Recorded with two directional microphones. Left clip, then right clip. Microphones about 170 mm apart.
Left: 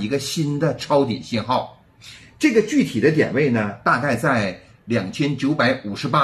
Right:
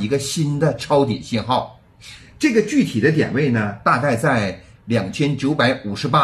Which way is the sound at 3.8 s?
15° right (ahead or behind).